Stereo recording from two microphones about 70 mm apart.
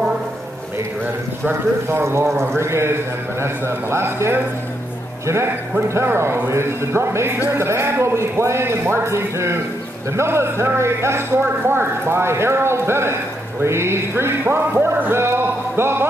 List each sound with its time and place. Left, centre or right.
1.4 s speech: right